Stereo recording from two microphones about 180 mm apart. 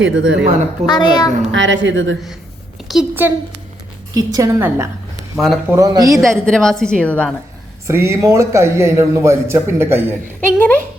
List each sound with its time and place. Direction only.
0.0 s a woman's voice: 90° right
0.9 s a woman's voice: 25° left (ahead or behind)
1.5 s a woman's voice: 90° right
2.9 s a man's voice: 5° right (ahead or behind)
4.1 s a woman's voice: 20° right (ahead or behind)
5.4 s a woman's voice: centre (ahead or behind)
5.7 s a woman's voice: 20° right (ahead or behind)
6.4 s a woman's voice: 5° left (ahead or behind)
7.9 s a man's voice: 15° right (ahead or behind)
10.6 s speech: 10° left (ahead or behind)